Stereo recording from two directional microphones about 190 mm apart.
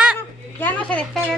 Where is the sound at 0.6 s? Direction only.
5° left (ahead or behind).